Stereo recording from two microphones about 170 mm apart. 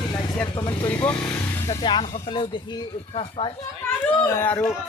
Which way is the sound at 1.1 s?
10° left (ahead or behind).